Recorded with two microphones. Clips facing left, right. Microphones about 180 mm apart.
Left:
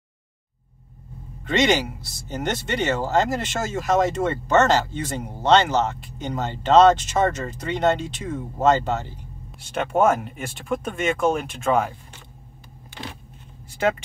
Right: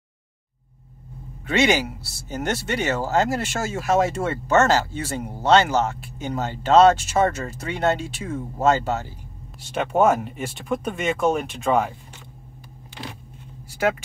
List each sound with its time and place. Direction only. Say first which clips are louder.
1.4 s speech: even; 10° right (ahead or behind)
13.0 s speech: even; 5° right (ahead or behind)